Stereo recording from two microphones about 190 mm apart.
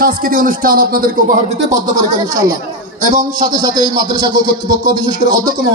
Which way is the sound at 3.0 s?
45° right (ahead or behind).